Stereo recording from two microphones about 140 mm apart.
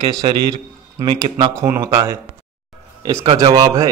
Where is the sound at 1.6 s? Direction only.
20° right (ahead or behind).